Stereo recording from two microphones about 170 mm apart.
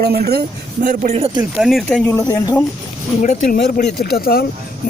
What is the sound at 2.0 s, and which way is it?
Speech, 15° left (ahead or behind).